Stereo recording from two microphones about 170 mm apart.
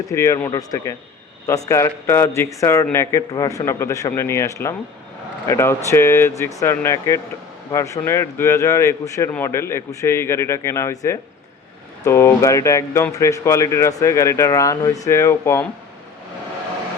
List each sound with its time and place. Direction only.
0.1 s speech: 15° left (ahead or behind)